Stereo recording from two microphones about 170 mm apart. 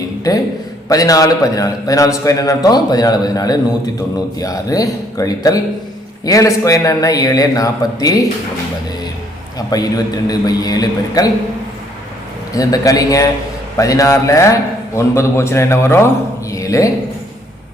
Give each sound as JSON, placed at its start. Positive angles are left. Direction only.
{"t": 0.3, "sound": "a man's voice", "side_deg": 20}
{"t": 9.6, "sound": "a man's voice", "side_deg": 20}
{"t": 12.5, "sound": "a man's voice", "side_deg": 20}
{"t": 16.5, "sound": "a sound", "side_deg": 20}